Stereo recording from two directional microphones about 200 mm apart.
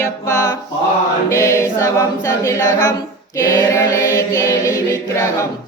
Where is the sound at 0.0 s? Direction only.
15° left (ahead or behind).